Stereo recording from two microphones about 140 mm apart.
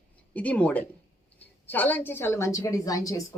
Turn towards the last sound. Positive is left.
turn(degrees=25)  # may be behind; listen again after turning